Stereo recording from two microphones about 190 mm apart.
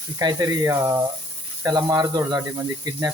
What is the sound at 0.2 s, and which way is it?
Speech, 20° right (ahead or behind).